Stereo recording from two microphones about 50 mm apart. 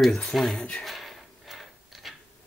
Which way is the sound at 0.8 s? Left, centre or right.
Centre.